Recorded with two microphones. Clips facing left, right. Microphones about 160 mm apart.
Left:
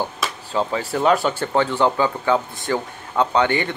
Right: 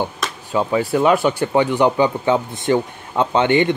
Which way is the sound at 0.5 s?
15° right (ahead or behind).